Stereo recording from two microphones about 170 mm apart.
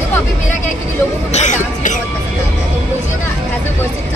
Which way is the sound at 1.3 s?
45° left (ahead or behind).